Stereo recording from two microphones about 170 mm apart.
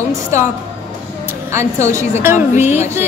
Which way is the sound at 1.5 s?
15° right (ahead or behind).